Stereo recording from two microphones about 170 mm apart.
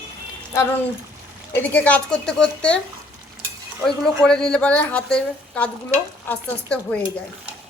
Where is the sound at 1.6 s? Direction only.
10° left (ahead or behind).